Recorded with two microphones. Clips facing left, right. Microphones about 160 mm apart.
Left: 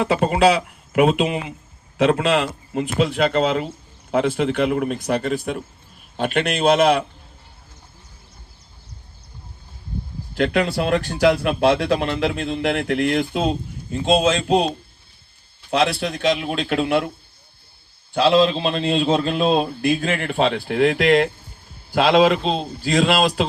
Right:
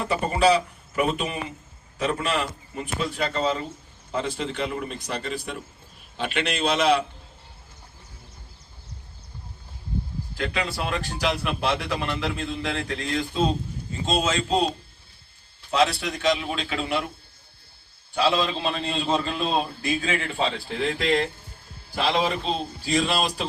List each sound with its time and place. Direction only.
0.0 s a man's voice: 90° left
4.1 s a man's voice: 65° left (ahead or behind)
10.3 s a man's voice: 85° left
15.7 s speech: 60° left (ahead or behind); by 17.0 s 80° left
18.1 s a man's voice: 90° left
21.9 s a man's voice: 90° left